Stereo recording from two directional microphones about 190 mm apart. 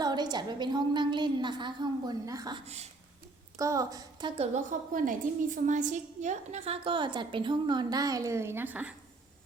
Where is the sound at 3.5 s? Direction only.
15° right (ahead or behind).